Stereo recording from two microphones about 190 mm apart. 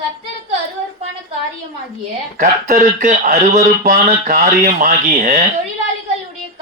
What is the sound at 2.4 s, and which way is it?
A man's voice, 45° right (ahead or behind).